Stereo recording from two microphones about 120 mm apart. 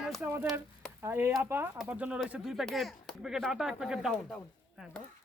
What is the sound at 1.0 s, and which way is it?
Speech, 20° right (ahead or behind).